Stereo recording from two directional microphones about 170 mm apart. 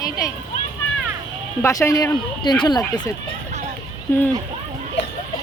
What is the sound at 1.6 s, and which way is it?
Speech, 20° left (ahead or behind).